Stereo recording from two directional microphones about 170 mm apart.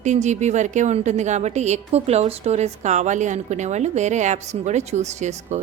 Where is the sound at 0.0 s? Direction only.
45° right (ahead or behind).